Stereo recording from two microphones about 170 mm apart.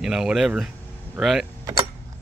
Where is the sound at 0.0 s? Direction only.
5° right (ahead or behind).